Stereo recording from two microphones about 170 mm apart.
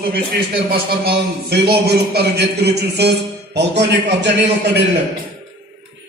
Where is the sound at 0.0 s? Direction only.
60° right (ahead or behind); by 4.7 s 90° right.